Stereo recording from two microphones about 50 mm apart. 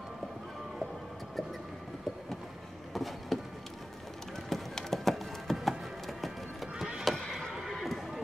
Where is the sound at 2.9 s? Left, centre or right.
Centre.